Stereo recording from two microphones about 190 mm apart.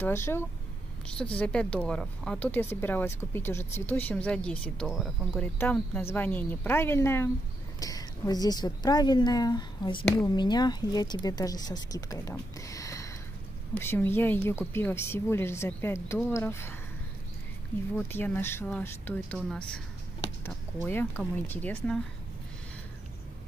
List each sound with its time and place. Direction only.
0.0 s a woman's voice: 15° left (ahead or behind)
5.6 s a woman's voice: 10° left (ahead or behind)
17.9 s a woman's voice: 10° left (ahead or behind)